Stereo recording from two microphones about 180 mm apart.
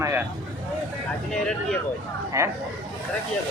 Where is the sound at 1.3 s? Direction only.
5° left (ahead or behind).